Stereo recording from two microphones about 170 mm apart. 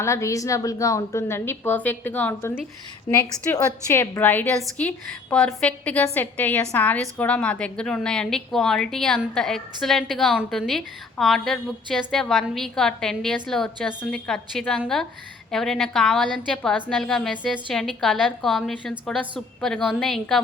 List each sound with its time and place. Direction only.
0.0 s a woman's voice: 15° left (ahead or behind); by 20.4 s centre (ahead or behind)